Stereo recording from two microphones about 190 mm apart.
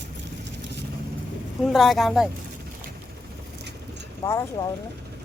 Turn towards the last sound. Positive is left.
turn(degrees=15)  # may be behind; listen again after turning